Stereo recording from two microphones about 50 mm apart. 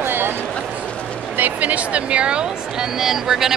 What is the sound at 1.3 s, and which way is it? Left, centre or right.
Speech, right.